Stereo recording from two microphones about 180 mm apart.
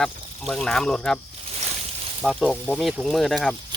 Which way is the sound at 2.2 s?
Centre (ahead or behind).